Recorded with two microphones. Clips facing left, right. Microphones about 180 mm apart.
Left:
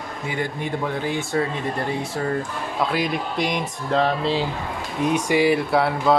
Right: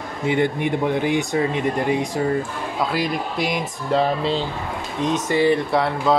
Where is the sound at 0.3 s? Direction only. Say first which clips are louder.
Right 7 dB; 20° right (ahead or behind).